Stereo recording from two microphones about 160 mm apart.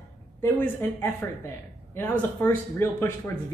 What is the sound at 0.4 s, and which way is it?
Speech, 15° left (ahead or behind).